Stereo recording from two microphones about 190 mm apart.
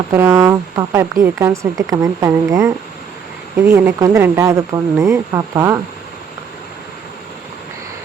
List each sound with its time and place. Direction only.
0.1 s speech: 15° right (ahead or behind)
3.8 s speech: 15° right (ahead or behind)